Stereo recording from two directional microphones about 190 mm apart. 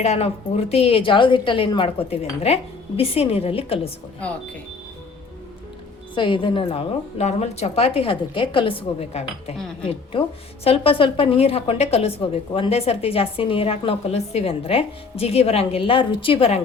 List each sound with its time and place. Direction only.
0.0 s a woman's voice: 35° left (ahead or behind)
6.1 s a woman's voice: 25° left (ahead or behind)